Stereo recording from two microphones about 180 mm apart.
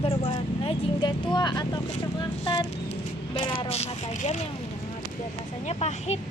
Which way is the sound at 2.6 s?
30° left (ahead or behind).